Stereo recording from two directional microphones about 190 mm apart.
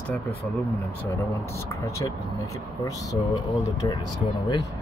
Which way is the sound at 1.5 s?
15° left (ahead or behind).